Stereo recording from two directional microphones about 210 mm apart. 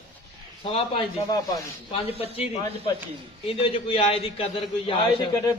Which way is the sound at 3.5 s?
25° left (ahead or behind).